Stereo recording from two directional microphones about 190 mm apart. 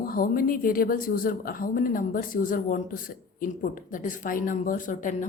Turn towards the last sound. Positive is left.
turn(degrees=45)  # may be behind; listen again after turning